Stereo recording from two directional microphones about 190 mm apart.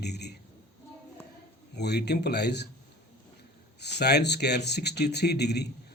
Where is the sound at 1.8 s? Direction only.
60° left (ahead or behind).